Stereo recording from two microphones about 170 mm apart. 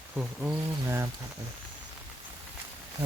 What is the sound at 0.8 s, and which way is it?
Speech, 15° right (ahead or behind).